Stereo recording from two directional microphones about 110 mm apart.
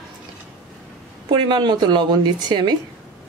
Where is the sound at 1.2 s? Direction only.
45° right (ahead or behind).